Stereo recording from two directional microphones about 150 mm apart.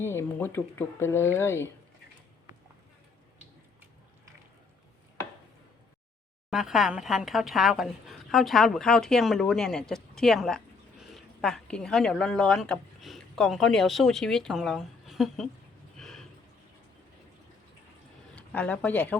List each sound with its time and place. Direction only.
0.0 s speech: 15° left (ahead or behind)
6.5 s a woman's voice: centre (ahead or behind)
16.0 s a sound: 5° left (ahead or behind)
18.3 s speech: 10° left (ahead or behind)